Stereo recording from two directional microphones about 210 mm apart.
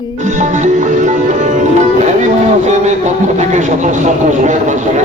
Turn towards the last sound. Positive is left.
turn(degrees=-35)  # may be behind; listen again after turning